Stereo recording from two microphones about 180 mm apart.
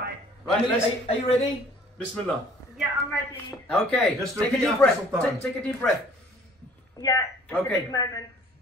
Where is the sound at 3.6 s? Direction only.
5° left (ahead or behind).